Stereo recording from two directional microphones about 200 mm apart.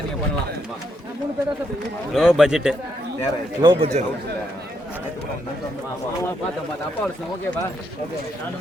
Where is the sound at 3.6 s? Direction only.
20° right (ahead or behind).